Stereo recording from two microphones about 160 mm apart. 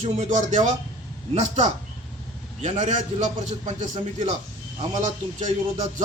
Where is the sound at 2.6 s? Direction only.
50° right (ahead or behind).